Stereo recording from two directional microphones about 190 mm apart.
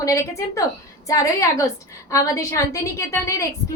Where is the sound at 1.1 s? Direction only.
15° left (ahead or behind).